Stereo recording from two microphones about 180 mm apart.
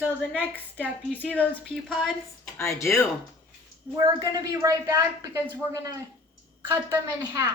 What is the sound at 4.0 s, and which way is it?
A woman's voice, 20° right (ahead or behind).